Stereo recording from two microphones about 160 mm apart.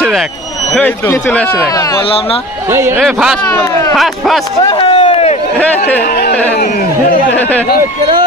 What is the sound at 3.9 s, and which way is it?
Speech, centre (ahead or behind).